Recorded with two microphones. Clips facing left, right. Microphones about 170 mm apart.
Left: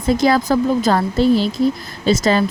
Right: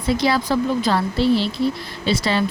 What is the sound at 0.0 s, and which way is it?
Speech, 45° left (ahead or behind).